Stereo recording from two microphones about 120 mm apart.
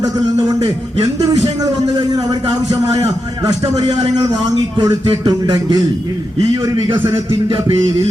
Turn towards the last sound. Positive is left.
turn(degrees=-45)  # may be behind; listen again after turning